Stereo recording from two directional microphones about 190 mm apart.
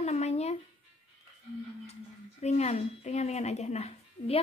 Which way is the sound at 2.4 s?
35° left (ahead or behind).